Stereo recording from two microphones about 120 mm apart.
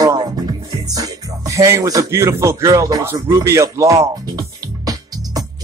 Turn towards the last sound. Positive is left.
turn(degrees=-30)  # may be behind; listen again after turning